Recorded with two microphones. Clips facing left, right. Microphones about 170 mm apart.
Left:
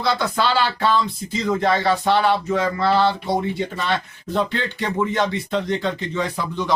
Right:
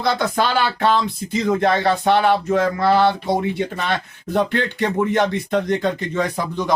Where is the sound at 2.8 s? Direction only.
15° right (ahead or behind).